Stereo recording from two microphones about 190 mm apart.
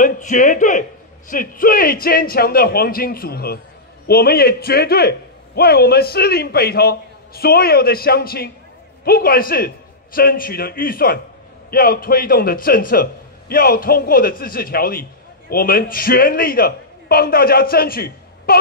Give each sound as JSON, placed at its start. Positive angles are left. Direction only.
{"t": 0.0, "sound": "a man's voice", "side_deg": 45}